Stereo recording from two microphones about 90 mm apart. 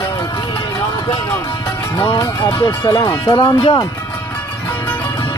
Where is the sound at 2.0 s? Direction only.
65° left (ahead or behind).